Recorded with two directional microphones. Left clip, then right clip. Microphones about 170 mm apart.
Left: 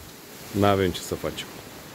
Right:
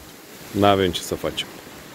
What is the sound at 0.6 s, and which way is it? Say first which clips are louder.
Speech: right 4 dB; 10° left (ahead or behind).